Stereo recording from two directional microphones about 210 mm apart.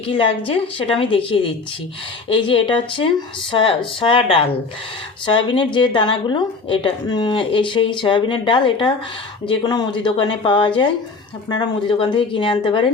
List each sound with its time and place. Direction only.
0.1 s a woman's voice: 25° left (ahead or behind)